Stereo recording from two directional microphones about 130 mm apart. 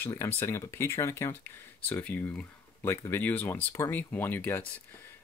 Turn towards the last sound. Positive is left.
turn(degrees=15)  # may be behind; listen again after turning